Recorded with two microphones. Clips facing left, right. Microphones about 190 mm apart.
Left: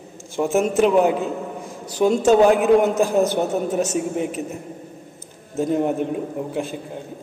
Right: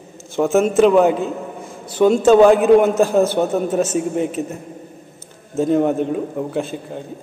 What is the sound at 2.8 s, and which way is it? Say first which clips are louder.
Speech: right 3 dB; 15° left (ahead or behind).